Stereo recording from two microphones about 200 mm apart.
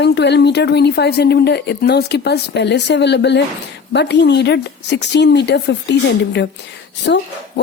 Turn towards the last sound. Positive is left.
turn(degrees=55)  # may be behind; listen again after turning